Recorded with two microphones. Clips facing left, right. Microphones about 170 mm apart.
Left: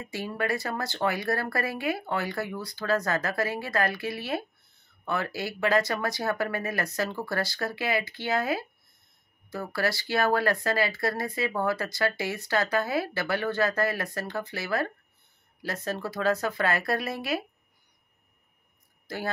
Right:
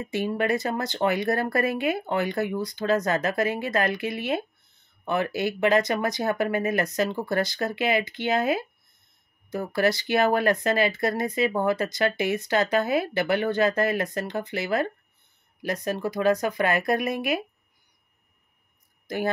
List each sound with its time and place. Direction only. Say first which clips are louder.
0.1 s speech: right 5 dB; 20° right (ahead or behind)
19.0 s speech: right 6 dB; 20° right (ahead or behind)